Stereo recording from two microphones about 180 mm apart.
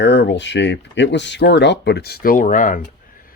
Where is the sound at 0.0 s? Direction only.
75° left (ahead or behind); by 2.8 s 45° left (ahead or behind).